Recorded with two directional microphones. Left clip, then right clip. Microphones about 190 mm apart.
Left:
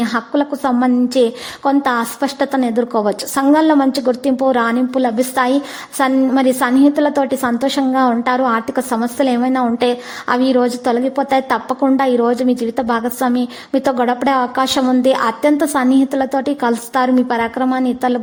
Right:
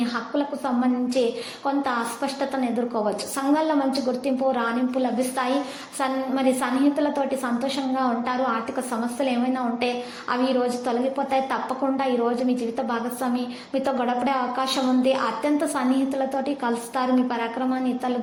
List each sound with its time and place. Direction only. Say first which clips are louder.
0.0 s a woman's voice: left 8 dB; 45° left (ahead or behind)